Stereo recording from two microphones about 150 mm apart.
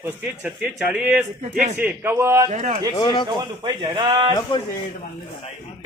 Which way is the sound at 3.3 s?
30° right (ahead or behind).